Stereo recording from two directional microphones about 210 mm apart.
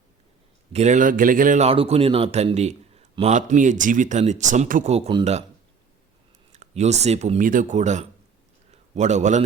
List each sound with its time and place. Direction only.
0.7 s speech: 35° right (ahead or behind)
6.5 s a man's voice: 30° right (ahead or behind)